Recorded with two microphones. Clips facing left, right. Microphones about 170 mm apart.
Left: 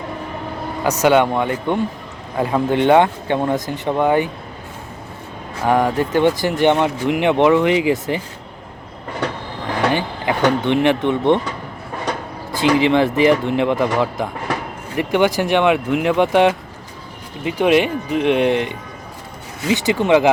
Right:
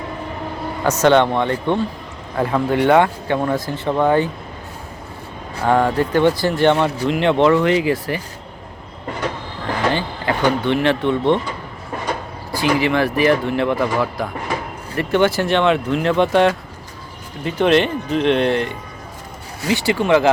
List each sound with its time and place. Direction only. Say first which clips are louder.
0.9 s speech: even; 10° left (ahead or behind)
5.6 s speech: even; 15° left (ahead or behind)
9.9 s speech: left 1 dB; 15° left (ahead or behind)
12.5 s speech: left 3 dB; 20° left (ahead or behind)